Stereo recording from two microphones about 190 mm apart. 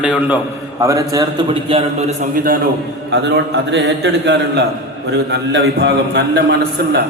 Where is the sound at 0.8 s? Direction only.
20° right (ahead or behind).